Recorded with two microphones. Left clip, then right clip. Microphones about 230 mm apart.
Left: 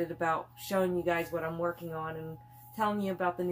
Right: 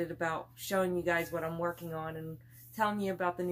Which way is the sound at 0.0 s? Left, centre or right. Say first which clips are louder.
Left 4 dB; centre.